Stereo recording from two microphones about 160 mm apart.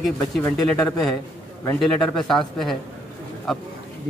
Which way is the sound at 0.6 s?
5° left (ahead or behind).